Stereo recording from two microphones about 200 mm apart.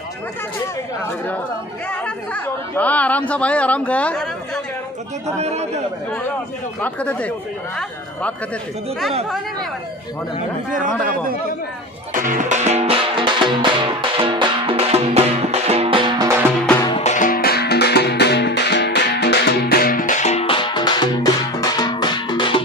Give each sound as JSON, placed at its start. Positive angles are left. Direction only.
{"t": 1.9, "sound": "speech", "side_deg": 5}
{"t": 5.2, "sound": "a man's voice", "side_deg": -35}
{"t": 6.8, "sound": "speech", "side_deg": 5}
{"t": 12.1, "sound": "music", "side_deg": -40}
{"t": 17.0, "sound": "music", "side_deg": 40}